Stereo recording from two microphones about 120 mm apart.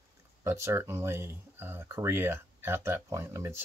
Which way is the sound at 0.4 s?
20° right (ahead or behind).